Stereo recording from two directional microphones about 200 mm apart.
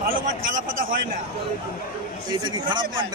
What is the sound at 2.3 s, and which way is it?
Speech, 25° right (ahead or behind).